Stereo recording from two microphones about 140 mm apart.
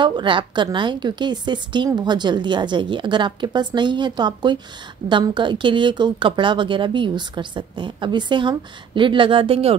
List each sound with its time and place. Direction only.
0.0 s speech: 35° right (ahead or behind)